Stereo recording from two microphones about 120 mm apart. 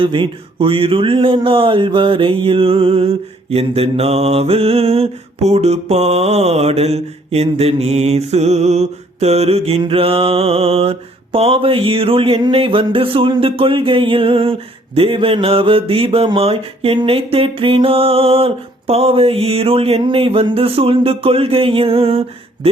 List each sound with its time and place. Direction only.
0.0 s mantra: 45° right (ahead or behind)